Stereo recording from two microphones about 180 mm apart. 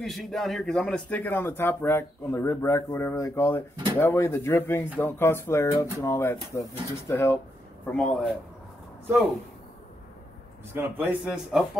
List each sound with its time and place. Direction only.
0.0 s a man's voice: centre (ahead or behind)
7.9 s speech: 5° left (ahead or behind)
10.7 s speech: 10° right (ahead or behind)